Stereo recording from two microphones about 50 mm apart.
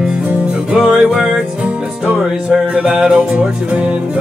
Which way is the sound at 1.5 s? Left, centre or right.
Right.